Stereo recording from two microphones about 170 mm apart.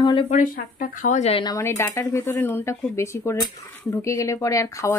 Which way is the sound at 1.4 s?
20° left (ahead or behind).